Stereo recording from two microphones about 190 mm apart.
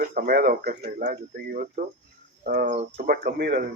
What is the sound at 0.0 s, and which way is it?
Speech, 45° right (ahead or behind).